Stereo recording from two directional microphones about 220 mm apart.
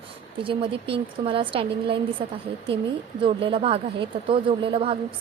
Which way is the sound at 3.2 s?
25° right (ahead or behind).